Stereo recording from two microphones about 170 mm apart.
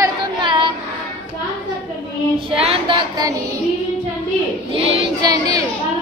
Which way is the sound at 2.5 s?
35° right (ahead or behind).